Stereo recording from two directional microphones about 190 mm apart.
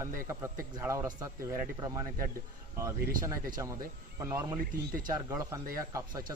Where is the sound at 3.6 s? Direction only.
20° right (ahead or behind).